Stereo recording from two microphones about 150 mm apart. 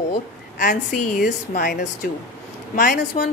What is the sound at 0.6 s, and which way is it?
A woman's voice, 60° left (ahead or behind).